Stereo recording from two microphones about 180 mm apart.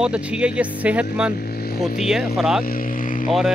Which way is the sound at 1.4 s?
60° left (ahead or behind).